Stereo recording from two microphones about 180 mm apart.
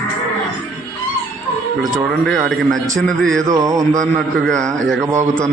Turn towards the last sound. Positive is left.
turn(degrees=5)  # may be behind; listen again after turning